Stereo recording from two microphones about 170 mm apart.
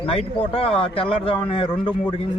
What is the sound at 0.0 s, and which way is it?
Speech, 35° left (ahead or behind).